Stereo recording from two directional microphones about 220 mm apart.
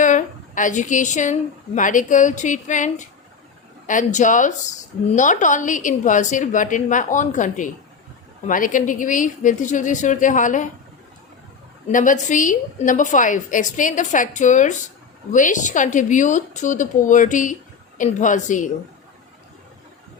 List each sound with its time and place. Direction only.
0.0 s a woman's voice: 35° left (ahead or behind)
11.9 s speech: 35° left (ahead or behind)